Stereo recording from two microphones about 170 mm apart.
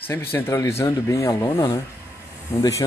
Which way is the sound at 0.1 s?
15° left (ahead or behind).